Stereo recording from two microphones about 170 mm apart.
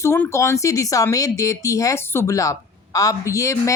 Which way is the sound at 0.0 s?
15° left (ahead or behind).